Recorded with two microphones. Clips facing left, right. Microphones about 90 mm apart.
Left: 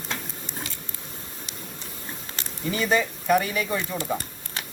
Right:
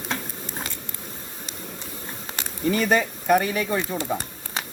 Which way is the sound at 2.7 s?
45° right (ahead or behind).